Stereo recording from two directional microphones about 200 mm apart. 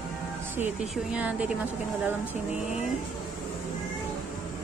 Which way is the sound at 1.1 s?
5° right (ahead or behind).